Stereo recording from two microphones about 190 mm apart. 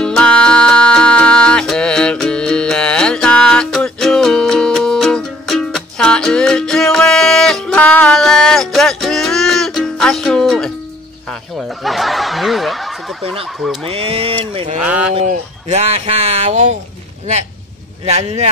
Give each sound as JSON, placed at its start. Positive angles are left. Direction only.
{"t": 0.0, "sound": "music", "side_deg": 5}
{"t": 11.5, "sound": "snicker", "side_deg": 0}
{"t": 13.8, "sound": "speech", "side_deg": -30}
{"t": 14.8, "sound": "speech", "side_deg": -5}
{"t": 15.1, "sound": "speech", "side_deg": -35}
{"t": 18.0, "sound": "speech", "side_deg": -35}